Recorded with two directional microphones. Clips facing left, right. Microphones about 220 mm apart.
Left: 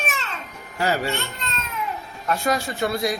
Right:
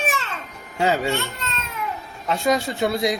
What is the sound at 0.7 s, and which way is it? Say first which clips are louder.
Speech: right 2 dB; 20° right (ahead or behind).